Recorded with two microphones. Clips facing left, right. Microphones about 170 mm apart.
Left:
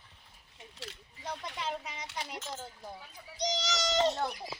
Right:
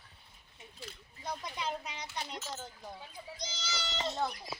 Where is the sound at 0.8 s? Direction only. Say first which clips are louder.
Left 2 dB; 80° left.